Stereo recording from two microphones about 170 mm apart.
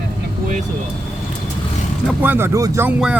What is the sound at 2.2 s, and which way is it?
Speech, 10° right (ahead or behind).